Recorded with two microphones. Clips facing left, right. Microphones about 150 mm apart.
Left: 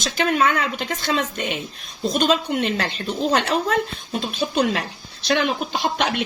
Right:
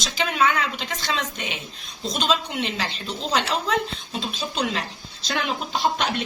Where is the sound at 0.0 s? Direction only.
50° left (ahead or behind).